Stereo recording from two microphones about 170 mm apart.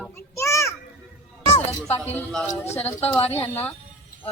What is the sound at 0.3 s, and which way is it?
Children playing, 15° left (ahead or behind).